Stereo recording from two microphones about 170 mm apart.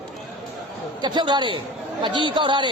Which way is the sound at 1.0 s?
25° right (ahead or behind).